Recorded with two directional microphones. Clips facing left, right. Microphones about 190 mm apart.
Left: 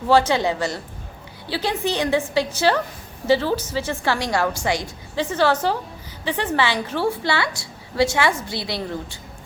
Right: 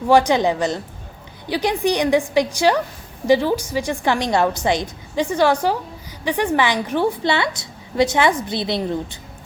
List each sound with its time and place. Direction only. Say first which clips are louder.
0.1 s a woman's voice: right 3 dB; 15° right (ahead or behind)